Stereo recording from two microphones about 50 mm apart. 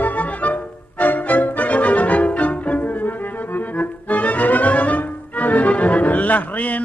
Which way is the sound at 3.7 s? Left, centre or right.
Left.